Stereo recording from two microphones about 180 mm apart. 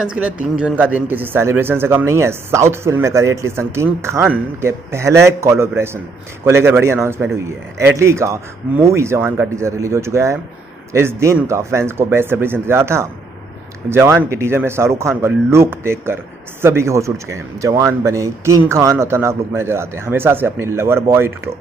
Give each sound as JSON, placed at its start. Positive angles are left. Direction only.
{"t": 0.0, "sound": "a man's voice", "side_deg": -5}